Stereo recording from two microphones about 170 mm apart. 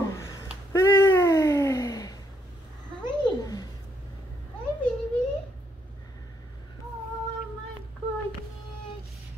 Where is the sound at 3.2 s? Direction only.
20° left (ahead or behind).